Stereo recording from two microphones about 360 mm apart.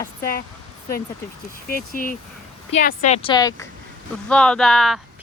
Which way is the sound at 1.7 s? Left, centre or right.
Left.